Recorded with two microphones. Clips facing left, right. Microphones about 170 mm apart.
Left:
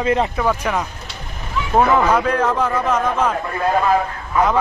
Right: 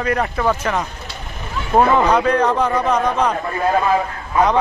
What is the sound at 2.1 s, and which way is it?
Speech, 5° left (ahead or behind).